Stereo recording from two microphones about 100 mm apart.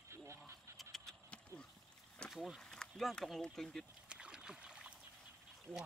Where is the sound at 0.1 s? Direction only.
30° right (ahead or behind).